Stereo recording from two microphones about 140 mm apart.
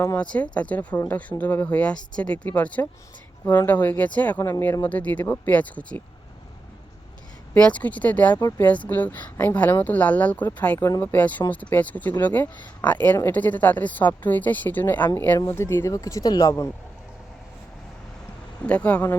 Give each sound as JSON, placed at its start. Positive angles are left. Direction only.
{"t": 0.2, "sound": "speech", "side_deg": 10}
{"t": 4.4, "sound": "speech", "side_deg": 25}
{"t": 4.6, "sound": "speech", "side_deg": 10}
{"t": 7.5, "sound": "speech", "side_deg": 10}
{"t": 18.6, "sound": "speech", "side_deg": 10}